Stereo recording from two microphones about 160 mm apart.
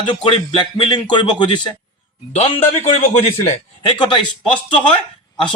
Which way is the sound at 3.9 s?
30° left (ahead or behind).